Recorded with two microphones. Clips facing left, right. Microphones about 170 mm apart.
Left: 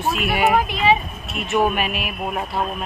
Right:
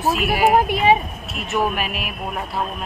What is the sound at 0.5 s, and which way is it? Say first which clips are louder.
Speech: right 2 dB; 45° right (ahead or behind).